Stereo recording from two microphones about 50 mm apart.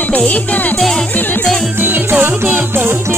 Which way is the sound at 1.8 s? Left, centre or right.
Right.